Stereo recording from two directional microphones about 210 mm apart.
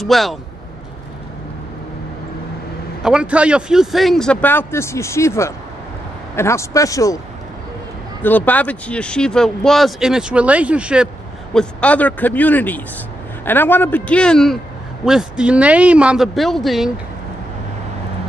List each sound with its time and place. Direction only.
0.0 s speech: centre (ahead or behind)
3.0 s speech: 5° right (ahead or behind); by 7.2 s 15° left (ahead or behind)
8.2 s speech: 10° left (ahead or behind)
11.5 s speech: 5° left (ahead or behind)